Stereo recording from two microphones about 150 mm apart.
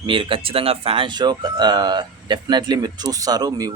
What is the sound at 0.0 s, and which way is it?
Speech, 35° right (ahead or behind).